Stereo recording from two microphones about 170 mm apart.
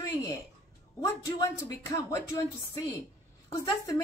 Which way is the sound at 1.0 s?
15° left (ahead or behind).